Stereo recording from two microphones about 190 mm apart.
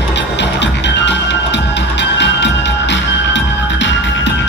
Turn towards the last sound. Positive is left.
turn(degrees=70)  # may be behind; listen again after turning